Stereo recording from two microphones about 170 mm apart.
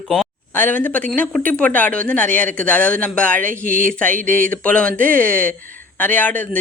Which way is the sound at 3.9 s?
10° left (ahead or behind).